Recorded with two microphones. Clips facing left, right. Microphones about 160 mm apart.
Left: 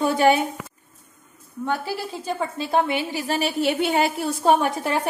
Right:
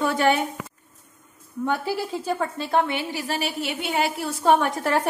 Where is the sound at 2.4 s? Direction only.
10° left (ahead or behind).